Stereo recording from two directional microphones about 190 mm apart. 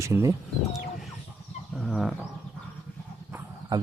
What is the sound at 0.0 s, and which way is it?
Speech, 15° right (ahead or behind).